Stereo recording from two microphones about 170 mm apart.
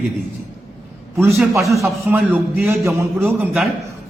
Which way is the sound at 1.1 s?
15° right (ahead or behind).